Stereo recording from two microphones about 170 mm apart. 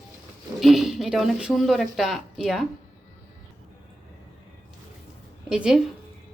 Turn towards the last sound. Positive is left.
turn(degrees=-5)  # may be behind; listen again after turning